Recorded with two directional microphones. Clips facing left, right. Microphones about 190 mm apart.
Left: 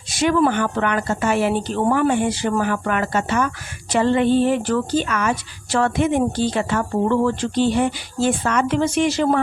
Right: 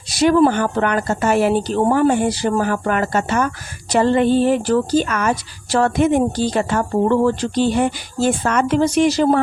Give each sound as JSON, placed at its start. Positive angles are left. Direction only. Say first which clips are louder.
{"t": 0.1, "sound": "speech", "louder": "right 4 dB", "side_deg": -35}